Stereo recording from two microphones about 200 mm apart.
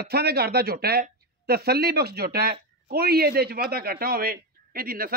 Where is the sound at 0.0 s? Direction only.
50° right (ahead or behind).